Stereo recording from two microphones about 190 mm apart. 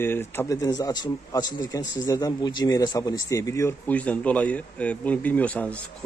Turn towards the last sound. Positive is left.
turn(degrees=5)  # may be behind; listen again after turning